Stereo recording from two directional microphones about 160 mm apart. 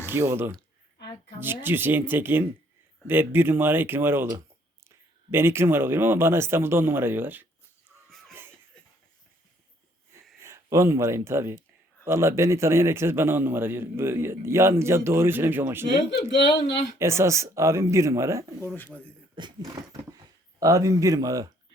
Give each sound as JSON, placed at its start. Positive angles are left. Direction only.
{"t": 0.0, "sound": "a man's voice", "side_deg": -15}
{"t": 8.3, "sound": "laughter", "side_deg": -15}
{"t": 10.4, "sound": "a man's voice", "side_deg": -15}
{"t": 17.0, "sound": "a man's voice", "side_deg": -15}